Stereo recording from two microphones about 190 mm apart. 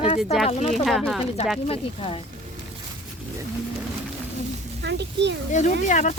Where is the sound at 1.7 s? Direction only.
30° left (ahead or behind).